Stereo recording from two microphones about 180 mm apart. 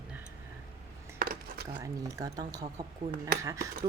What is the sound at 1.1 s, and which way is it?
Dishes, 55° right (ahead or behind).